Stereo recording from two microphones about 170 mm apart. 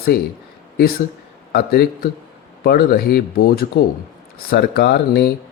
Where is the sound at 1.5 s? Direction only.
65° left (ahead or behind).